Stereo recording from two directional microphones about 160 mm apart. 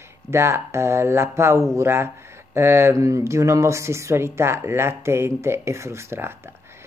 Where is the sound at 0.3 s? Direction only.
15° right (ahead or behind).